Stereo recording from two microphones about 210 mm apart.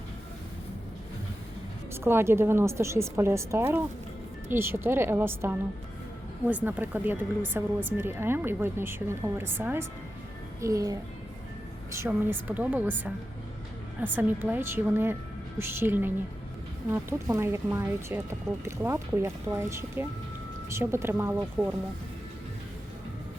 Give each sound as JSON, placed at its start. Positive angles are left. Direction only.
{"t": 1.9, "sound": "speech", "side_deg": -10}